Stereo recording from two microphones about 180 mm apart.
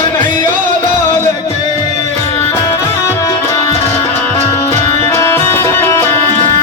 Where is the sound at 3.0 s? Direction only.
15° left (ahead or behind).